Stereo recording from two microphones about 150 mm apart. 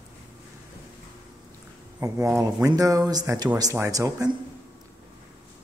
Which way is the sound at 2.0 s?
20° right (ahead or behind).